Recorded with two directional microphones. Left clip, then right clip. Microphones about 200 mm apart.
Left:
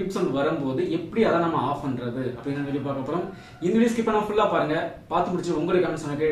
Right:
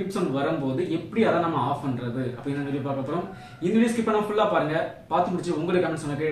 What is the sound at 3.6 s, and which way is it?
Speech, centre (ahead or behind).